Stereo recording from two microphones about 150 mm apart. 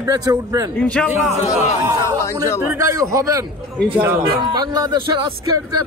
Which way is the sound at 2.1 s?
20° left (ahead or behind).